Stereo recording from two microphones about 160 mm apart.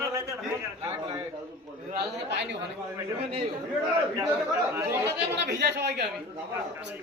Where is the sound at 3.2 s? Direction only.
40° right (ahead or behind).